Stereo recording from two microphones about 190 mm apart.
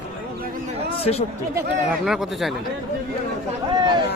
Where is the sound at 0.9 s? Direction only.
30° left (ahead or behind).